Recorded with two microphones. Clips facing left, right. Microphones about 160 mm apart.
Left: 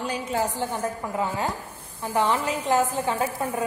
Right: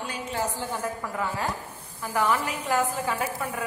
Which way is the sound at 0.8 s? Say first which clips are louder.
Left 3 dB; 25° left (ahead or behind).